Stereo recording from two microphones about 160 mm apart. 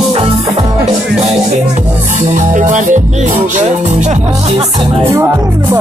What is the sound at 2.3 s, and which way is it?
Music, 55° right (ahead or behind).